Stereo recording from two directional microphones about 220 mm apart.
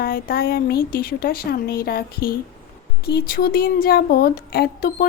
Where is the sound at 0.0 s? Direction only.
40° left (ahead or behind).